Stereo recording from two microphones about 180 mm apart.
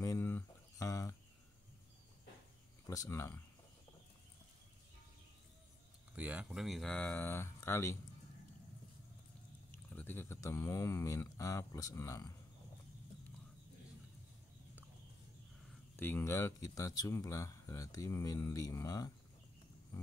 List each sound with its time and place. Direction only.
0.0 s a sound: 15° left (ahead or behind)
2.9 s speech: 15° left (ahead or behind)
6.1 s speech: 5° right (ahead or behind); by 8.0 s 15° left (ahead or behind)
9.9 s speech: 10° left (ahead or behind)
16.0 s speech: 10° left (ahead or behind)